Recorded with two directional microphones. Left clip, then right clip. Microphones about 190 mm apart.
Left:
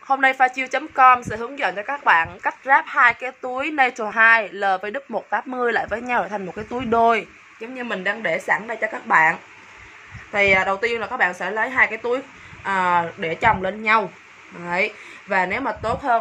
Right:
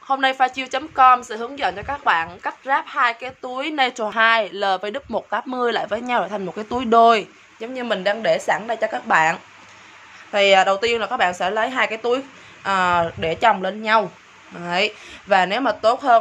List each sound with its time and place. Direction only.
0.1 s a woman's voice: 5° right (ahead or behind); by 7.2 s 25° right (ahead or behind)
7.6 s a woman's voice: 45° right (ahead or behind); by 14.0 s 20° right (ahead or behind)
14.6 s speech: 35° right (ahead or behind)